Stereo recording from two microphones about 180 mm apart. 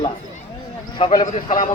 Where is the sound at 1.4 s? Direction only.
45° left (ahead or behind).